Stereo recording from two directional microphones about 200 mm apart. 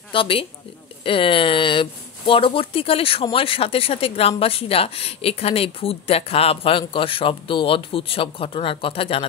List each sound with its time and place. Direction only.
0.1 s speech: 25° left (ahead or behind)